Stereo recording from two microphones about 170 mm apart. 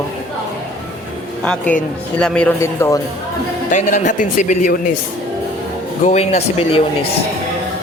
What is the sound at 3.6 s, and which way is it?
Speech, 45° left (ahead or behind).